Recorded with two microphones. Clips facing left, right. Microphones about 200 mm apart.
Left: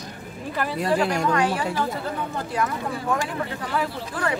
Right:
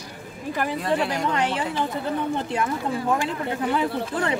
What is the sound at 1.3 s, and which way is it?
Speech, 25° right (ahead or behind).